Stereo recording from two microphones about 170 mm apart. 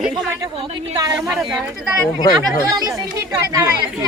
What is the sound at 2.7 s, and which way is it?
Speech, 20° right (ahead or behind).